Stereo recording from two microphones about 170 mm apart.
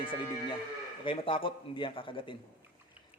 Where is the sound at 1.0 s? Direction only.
30° left (ahead or behind).